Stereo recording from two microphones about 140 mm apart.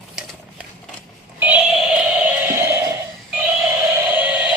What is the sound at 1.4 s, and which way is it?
Music, 10° right (ahead or behind).